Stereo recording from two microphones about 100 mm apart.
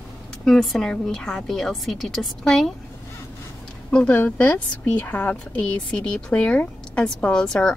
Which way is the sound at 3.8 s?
10° left (ahead or behind).